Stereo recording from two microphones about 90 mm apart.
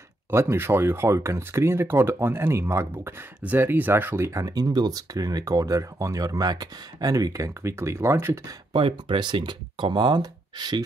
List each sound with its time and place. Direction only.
0.3 s speech: 30° right (ahead or behind)
8.7 s speech: 75° right (ahead or behind); by 10.8 s 50° right (ahead or behind)